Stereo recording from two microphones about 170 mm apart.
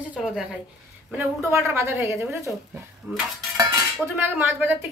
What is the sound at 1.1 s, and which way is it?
A woman's voice, 15° right (ahead or behind).